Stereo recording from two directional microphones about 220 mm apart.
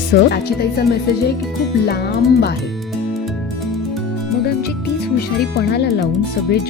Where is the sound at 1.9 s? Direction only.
45° left (ahead or behind).